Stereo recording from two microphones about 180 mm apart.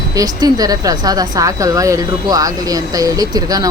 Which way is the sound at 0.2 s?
20° right (ahead or behind).